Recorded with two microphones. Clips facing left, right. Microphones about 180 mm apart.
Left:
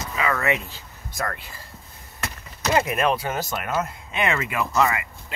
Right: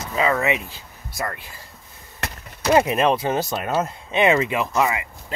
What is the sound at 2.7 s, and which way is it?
Speech, 25° right (ahead or behind).